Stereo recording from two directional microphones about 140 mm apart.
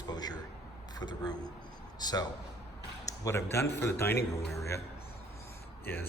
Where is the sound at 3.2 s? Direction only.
20° left (ahead or behind).